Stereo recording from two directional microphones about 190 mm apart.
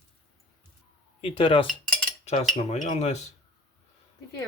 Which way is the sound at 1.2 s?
30° left (ahead or behind).